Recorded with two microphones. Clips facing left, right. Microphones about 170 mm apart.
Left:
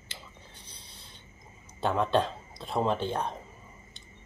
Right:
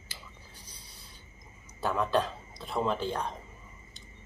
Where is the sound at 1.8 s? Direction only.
25° left (ahead or behind).